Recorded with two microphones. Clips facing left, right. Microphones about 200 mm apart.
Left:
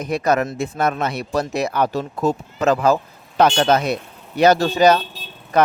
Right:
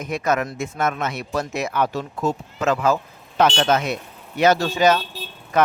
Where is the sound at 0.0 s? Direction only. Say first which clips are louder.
Left 3 dB; 35° left (ahead or behind).